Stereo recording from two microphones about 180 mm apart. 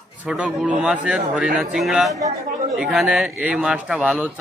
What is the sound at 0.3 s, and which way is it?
Speech, 5° right (ahead or behind).